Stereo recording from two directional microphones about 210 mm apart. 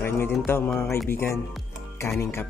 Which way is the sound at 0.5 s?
10° left (ahead or behind).